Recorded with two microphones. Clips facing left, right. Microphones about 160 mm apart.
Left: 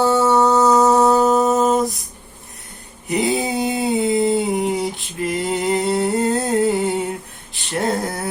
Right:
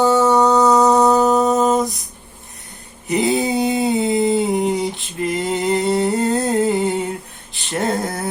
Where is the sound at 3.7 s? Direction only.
25° right (ahead or behind).